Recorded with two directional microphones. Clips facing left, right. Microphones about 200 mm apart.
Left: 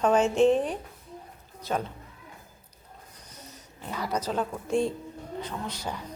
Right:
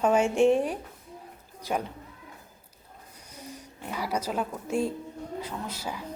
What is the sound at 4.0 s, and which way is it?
A woman's voice, 10° right (ahead or behind).